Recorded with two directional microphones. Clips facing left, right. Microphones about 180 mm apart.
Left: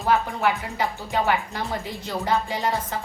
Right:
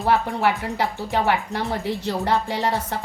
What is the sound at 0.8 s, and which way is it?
A woman's voice, 65° right (ahead or behind).